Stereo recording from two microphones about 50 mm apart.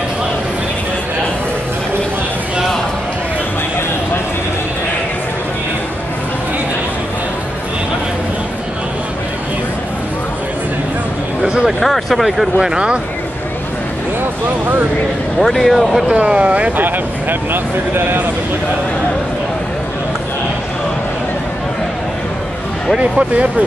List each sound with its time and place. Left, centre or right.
11.4 s a sound: centre
11.8 s speech: centre
15.3 s speech: centre
16.1 s speech: right
16.8 s speech: right
22.9 s speech: right